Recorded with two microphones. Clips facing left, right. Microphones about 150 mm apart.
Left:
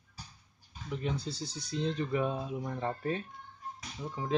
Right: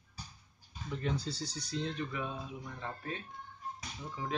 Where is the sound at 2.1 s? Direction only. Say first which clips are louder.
Left 8 dB; 40° left (ahead or behind).